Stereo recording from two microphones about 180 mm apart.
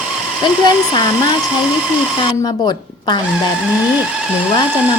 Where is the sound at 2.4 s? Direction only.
25° left (ahead or behind).